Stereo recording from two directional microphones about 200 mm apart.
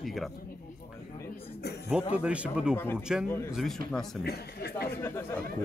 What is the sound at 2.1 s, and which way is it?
Speech, 5° right (ahead or behind).